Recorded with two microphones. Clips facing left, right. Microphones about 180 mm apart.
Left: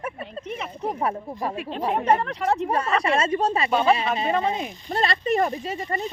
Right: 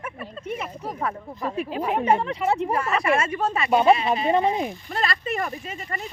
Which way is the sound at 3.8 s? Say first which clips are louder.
Right 2 dB; 25° right (ahead or behind).